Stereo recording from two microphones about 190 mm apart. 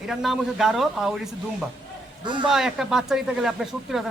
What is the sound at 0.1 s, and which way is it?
Speech, centre (ahead or behind).